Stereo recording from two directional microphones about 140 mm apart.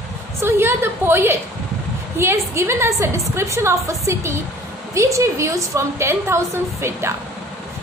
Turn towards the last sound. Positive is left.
turn(degrees=-20)  # may be behind; listen again after turning